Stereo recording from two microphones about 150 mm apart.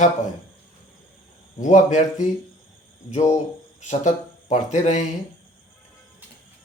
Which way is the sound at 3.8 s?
55° left (ahead or behind).